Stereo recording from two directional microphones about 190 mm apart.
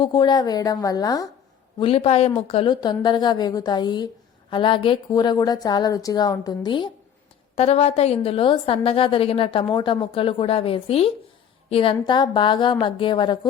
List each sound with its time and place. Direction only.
0.0 s a woman's voice: 25° left (ahead or behind)
1.8 s a woman's voice: 30° left (ahead or behind)